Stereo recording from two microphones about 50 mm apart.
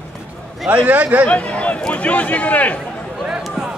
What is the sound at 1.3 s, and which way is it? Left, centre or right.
Speech, left.